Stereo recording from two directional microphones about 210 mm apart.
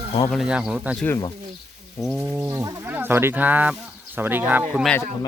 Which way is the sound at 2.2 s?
10° right (ahead or behind).